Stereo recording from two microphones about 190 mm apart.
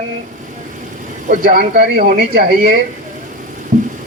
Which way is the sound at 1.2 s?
50° right (ahead or behind).